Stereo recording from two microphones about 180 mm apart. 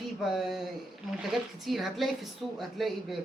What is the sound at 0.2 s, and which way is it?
Speech, centre (ahead or behind).